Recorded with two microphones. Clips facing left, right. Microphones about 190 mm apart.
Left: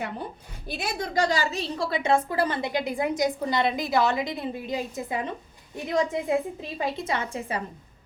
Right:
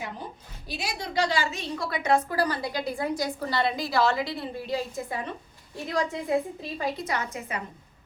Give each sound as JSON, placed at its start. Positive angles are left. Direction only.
{"t": 0.7, "sound": "a woman's voice", "side_deg": 55}